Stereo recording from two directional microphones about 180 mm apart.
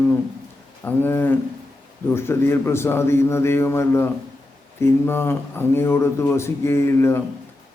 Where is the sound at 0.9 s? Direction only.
10° left (ahead or behind).